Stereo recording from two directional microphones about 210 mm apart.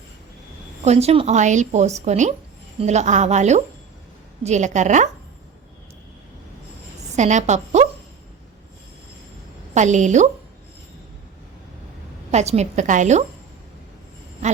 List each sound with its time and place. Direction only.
0.9 s a woman's voice: 30° right (ahead or behind)
7.2 s a woman's voice: 35° right (ahead or behind)
9.7 s a woman's voice: 35° right (ahead or behind)
12.3 s a woman's voice: 30° right (ahead or behind)